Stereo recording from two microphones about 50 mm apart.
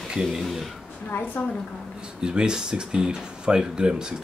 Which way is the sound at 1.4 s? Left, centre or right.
Left.